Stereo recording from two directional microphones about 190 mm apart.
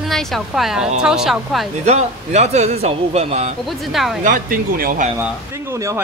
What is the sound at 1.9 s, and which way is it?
A man's voice, 35° right (ahead or behind).